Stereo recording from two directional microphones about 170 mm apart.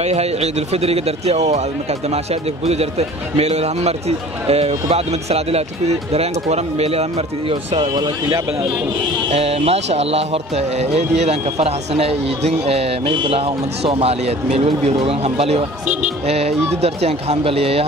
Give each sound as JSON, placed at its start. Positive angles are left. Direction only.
{"t": 0.0, "sound": "speech", "side_deg": -40}
{"t": 2.6, "sound": "speech", "side_deg": -40}
{"t": 9.3, "sound": "speech", "side_deg": -40}